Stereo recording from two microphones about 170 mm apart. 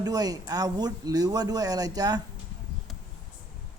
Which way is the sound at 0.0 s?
20° right (ahead or behind).